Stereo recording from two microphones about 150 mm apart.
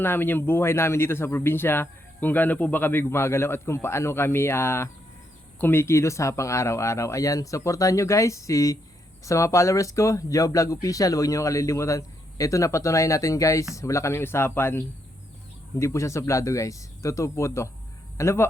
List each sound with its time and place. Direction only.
0.0 s speech: 15° left (ahead or behind)